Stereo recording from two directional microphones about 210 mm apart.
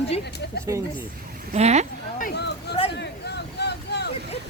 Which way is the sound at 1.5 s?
30° right (ahead or behind).